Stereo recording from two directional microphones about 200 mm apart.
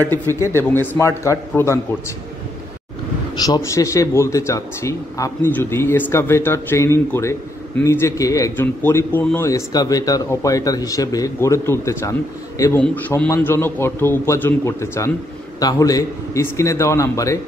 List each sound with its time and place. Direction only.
0.0 s speech: 10° left (ahead or behind)
3.3 s speech: 20° left (ahead or behind)